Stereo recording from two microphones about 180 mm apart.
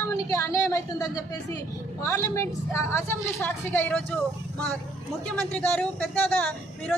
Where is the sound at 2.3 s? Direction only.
15° left (ahead or behind).